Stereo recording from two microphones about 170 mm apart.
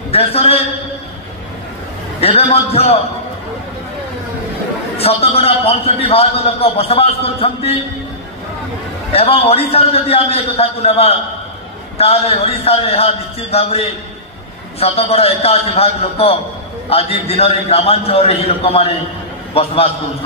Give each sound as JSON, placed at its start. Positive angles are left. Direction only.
{"t": 0.1, "sound": "a man's voice", "side_deg": 35}
{"t": 2.1, "sound": "a man's voice", "side_deg": 35}
{"t": 4.9, "sound": "a man's voice", "side_deg": 35}
{"t": 9.1, "sound": "a man's voice", "side_deg": 35}